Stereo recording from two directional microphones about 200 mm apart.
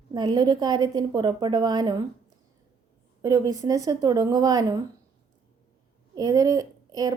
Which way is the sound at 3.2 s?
15° right (ahead or behind).